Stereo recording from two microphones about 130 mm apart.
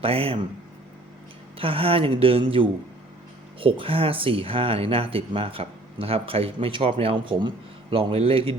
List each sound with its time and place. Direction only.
0.0 s speech: 45° right (ahead or behind)
1.5 s speech: 45° right (ahead or behind)